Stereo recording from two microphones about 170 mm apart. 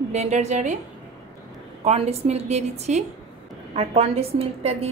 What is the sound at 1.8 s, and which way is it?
A woman's voice, 40° right (ahead or behind).